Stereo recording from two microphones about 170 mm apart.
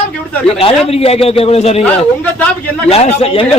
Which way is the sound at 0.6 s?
35° left (ahead or behind).